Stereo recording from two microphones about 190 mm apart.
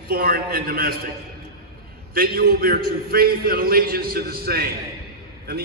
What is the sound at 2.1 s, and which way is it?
A man's voice, 55° right (ahead or behind).